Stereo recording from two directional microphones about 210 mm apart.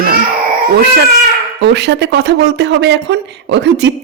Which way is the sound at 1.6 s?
55° right (ahead or behind).